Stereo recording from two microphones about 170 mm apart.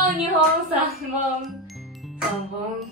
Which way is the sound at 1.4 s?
Centre (ahead or behind).